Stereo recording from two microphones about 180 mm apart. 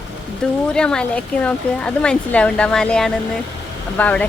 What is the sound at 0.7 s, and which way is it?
Speech, 5° left (ahead or behind).